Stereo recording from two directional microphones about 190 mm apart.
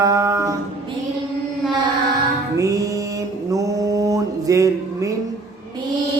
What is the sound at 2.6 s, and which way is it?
Mantra, 15° right (ahead or behind).